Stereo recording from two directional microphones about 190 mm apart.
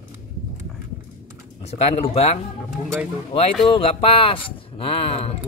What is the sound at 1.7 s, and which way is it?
Speech, 35° left (ahead or behind).